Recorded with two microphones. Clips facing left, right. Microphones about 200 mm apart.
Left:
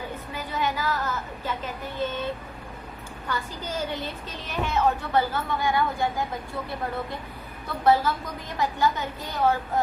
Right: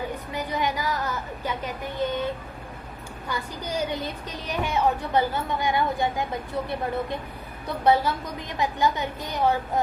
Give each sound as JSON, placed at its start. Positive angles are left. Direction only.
{"t": 0.3, "sound": "a sound", "side_deg": -15}
{"t": 3.2, "sound": "speech", "side_deg": -15}
{"t": 7.9, "sound": "speech", "side_deg": -15}